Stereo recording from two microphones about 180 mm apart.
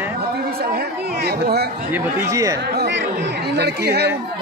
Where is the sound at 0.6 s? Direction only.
60° right (ahead or behind).